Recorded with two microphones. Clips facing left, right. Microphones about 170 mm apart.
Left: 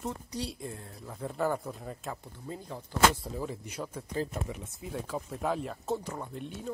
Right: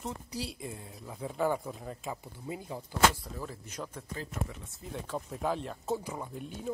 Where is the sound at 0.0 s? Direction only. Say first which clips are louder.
Left 2 dB; centre (ahead or behind).